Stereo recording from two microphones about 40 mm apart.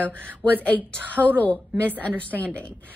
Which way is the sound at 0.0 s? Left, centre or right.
Right.